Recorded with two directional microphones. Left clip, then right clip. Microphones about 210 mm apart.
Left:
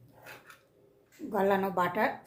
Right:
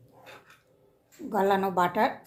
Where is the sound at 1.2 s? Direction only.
30° right (ahead or behind).